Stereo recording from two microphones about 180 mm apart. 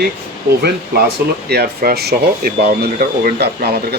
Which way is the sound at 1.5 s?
60° right (ahead or behind).